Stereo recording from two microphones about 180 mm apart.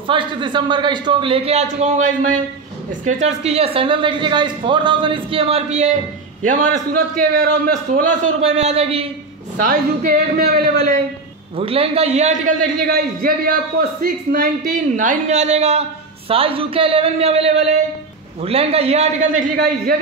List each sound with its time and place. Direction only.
0.0 s a woman's voice: 25° right (ahead or behind); by 8.0 s 55° right (ahead or behind)
8.1 s a man's voice: 40° right (ahead or behind)
9.6 s a man's voice: 50° right (ahead or behind)
11.5 s a man's voice: 30° right (ahead or behind)